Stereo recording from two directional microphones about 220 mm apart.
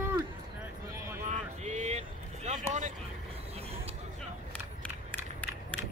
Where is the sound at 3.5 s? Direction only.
25° right (ahead or behind).